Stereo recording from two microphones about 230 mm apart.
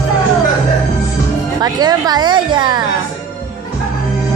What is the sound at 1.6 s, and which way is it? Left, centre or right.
A woman's voice, centre.